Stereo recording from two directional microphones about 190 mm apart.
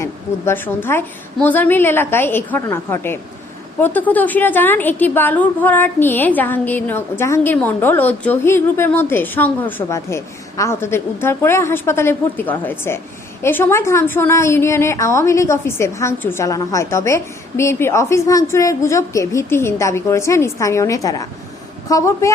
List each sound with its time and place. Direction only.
0.0 s a woman's voice: 10° left (ahead or behind)